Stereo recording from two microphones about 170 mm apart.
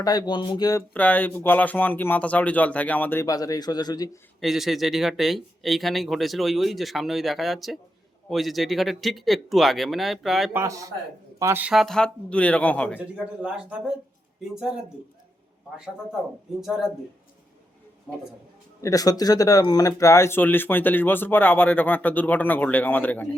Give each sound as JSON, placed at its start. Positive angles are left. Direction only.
{"t": 0.0, "sound": "speech", "side_deg": 25}
{"t": 0.9, "sound": "speech", "side_deg": 10}
{"t": 4.4, "sound": "speech", "side_deg": 0}
{"t": 10.5, "sound": "speech", "side_deg": -15}
{"t": 13.0, "sound": "speech", "side_deg": -5}
{"t": 16.6, "sound": "speech", "side_deg": 0}
{"t": 18.1, "sound": "speech", "side_deg": 0}
{"t": 18.8, "sound": "speech", "side_deg": 20}